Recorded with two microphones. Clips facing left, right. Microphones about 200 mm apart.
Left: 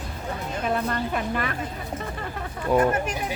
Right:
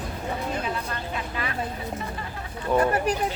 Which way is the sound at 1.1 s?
55° left (ahead or behind).